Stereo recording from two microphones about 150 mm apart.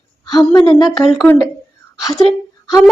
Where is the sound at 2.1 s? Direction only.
Centre (ahead or behind).